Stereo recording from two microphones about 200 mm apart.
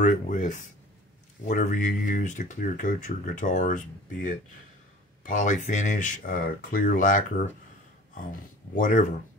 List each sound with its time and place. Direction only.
0.0 s speech: 40° left (ahead or behind)